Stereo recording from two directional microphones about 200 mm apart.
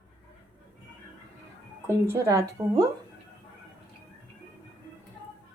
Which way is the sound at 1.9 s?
15° right (ahead or behind).